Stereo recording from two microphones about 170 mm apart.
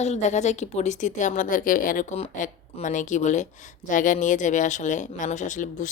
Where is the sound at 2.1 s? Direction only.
35° left (ahead or behind).